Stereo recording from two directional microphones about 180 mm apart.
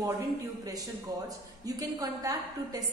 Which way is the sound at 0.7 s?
20° right (ahead or behind).